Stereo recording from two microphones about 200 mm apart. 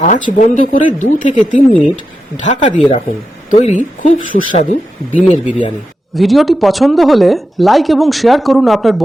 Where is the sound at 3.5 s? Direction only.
30° left (ahead or behind).